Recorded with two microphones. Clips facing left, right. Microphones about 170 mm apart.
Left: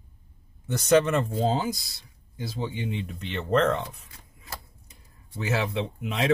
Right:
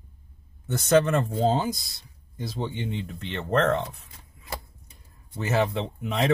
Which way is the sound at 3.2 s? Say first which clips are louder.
Left 1 dB; 30° right (ahead or behind).